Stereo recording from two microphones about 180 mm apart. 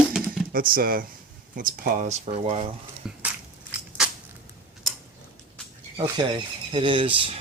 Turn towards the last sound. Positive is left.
turn(degrees=-30)  # may be behind; listen again after turning